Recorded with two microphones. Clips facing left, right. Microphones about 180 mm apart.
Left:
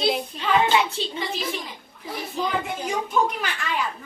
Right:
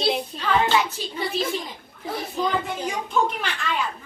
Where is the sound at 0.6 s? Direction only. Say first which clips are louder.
Left 1 dB; 25° left (ahead or behind).